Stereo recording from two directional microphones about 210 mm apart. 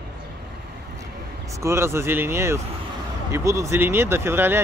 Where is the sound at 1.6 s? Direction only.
10° right (ahead or behind).